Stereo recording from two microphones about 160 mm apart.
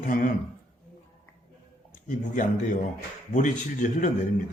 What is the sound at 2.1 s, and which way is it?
A man's voice, 55° left (ahead or behind).